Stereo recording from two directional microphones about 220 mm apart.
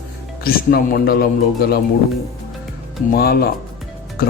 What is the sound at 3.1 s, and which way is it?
Speech, 45° left (ahead or behind).